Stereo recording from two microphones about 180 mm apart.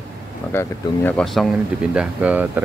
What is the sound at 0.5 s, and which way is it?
Speech, 10° left (ahead or behind).